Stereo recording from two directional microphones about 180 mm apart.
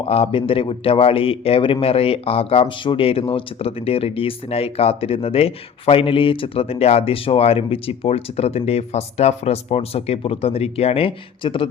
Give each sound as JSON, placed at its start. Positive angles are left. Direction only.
{"t": 0.0, "sound": "a man's voice", "side_deg": 30}